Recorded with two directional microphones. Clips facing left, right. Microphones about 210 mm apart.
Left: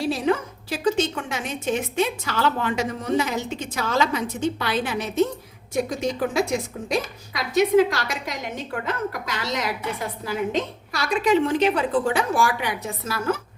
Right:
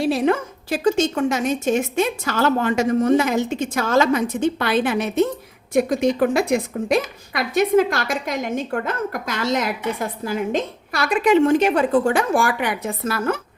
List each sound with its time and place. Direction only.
0.1 s a woman's voice: 55° right (ahead or behind)